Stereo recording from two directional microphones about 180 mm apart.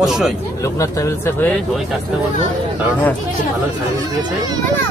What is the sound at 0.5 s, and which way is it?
Speech, 15° left (ahead or behind).